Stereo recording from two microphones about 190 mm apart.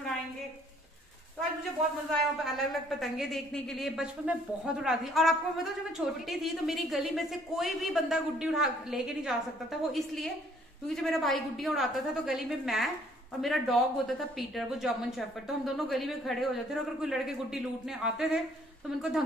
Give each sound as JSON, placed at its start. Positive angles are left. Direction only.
{"t": 2.4, "sound": "speech", "side_deg": 0}